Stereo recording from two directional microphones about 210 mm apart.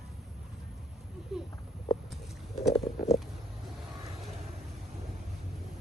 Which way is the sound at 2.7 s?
30° left (ahead or behind).